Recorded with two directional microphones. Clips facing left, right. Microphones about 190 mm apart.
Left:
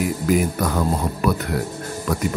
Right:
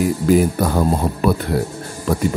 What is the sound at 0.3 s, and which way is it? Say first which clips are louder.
Speech: right 5 dB; 30° right (ahead or behind).